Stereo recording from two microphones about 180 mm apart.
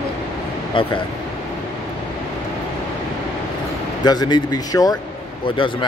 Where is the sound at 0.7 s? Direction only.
30° left (ahead or behind).